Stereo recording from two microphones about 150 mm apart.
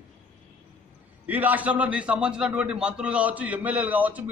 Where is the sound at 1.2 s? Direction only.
10° right (ahead or behind).